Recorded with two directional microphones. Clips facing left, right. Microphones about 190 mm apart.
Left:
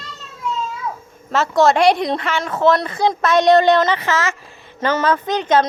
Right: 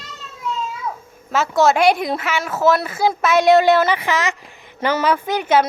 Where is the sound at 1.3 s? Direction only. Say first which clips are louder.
Left 1 dB; 5° right (ahead or behind).